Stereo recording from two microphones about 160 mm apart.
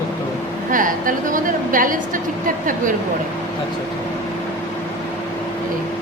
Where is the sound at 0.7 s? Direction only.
55° right (ahead or behind).